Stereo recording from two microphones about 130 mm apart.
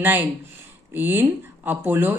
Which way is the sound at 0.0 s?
15° right (ahead or behind).